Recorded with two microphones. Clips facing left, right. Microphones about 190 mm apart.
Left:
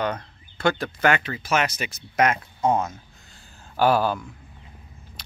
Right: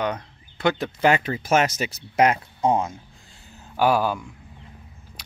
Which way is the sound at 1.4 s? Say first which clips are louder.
Right 4 dB; 45° right (ahead or behind).